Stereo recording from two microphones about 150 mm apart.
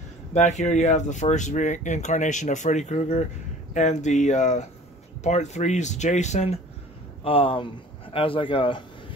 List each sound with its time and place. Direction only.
0.3 s speech: 50° left (ahead or behind)
7.2 s speech: 35° left (ahead or behind)